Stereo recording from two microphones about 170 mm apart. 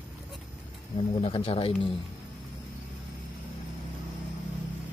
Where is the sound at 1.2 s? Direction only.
35° left (ahead or behind).